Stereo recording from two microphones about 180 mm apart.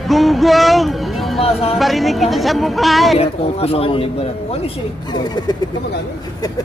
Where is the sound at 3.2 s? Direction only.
35° left (ahead or behind).